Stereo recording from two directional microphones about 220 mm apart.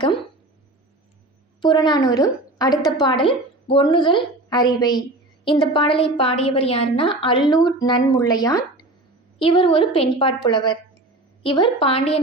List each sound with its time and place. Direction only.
1.6 s a woman's voice: 20° left (ahead or behind)